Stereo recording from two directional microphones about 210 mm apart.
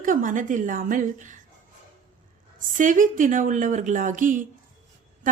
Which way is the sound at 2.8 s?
40° right (ahead or behind).